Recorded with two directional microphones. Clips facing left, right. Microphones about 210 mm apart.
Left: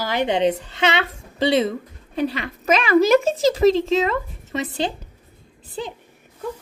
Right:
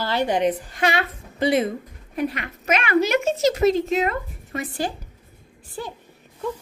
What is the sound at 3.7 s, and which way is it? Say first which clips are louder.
Speech: left 3 dB; 90° left.